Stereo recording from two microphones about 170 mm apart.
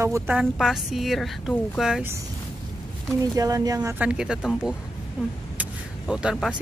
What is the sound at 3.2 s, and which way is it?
Speech, 20° right (ahead or behind).